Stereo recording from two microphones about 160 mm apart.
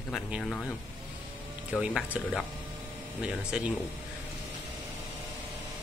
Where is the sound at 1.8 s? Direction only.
10° right (ahead or behind).